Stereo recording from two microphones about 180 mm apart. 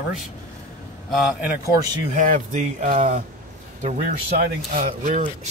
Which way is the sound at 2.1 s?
45° right (ahead or behind).